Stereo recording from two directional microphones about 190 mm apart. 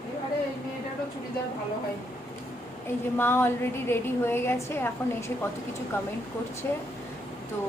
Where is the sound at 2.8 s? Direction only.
10° left (ahead or behind).